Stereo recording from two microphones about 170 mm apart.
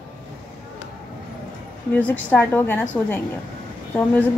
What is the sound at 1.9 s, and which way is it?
A woman's voice, 10° left (ahead or behind).